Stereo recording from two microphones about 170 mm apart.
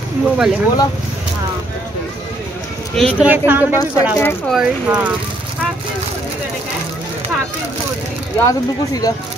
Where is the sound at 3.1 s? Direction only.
10° right (ahead or behind).